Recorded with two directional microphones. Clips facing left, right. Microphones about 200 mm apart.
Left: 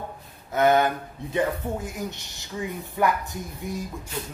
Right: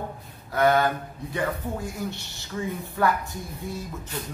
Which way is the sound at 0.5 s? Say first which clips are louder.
Left 1 dB; 20° left (ahead or behind).